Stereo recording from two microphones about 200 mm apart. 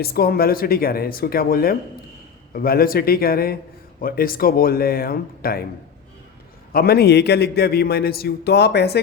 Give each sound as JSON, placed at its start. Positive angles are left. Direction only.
{"t": 0.0, "sound": "a man's voice", "side_deg": 50}
{"t": 6.7, "sound": "a man's voice", "side_deg": 50}